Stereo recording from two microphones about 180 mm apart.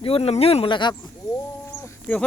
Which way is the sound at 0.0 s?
30° left (ahead or behind).